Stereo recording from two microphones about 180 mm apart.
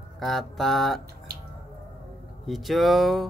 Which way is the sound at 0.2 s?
Centre (ahead or behind).